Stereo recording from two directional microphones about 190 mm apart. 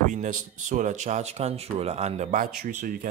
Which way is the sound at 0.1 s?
40° right (ahead or behind).